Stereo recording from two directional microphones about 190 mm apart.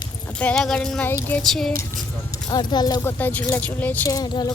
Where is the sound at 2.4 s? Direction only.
20° left (ahead or behind).